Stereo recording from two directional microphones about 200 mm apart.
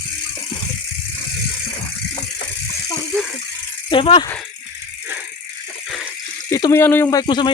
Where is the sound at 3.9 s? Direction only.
25° left (ahead or behind).